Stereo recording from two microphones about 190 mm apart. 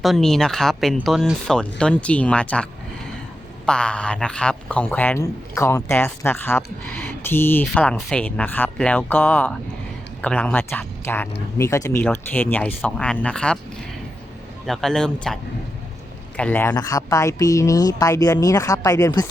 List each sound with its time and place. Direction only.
0.0 s speech: centre (ahead or behind)
3.7 s speech: 5° left (ahead or behind)
14.7 s speech: centre (ahead or behind)
16.4 s speech: 10° left (ahead or behind)